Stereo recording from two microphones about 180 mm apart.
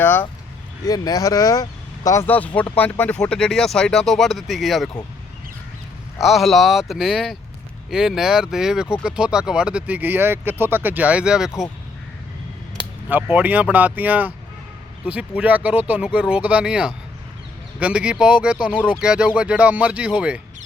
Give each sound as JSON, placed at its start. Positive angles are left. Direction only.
{"t": 0.0, "sound": "speech", "side_deg": 10}
{"t": 0.9, "sound": "speech", "side_deg": 20}
{"t": 6.1, "sound": "speech", "side_deg": 0}
{"t": 13.1, "sound": "speech", "side_deg": -10}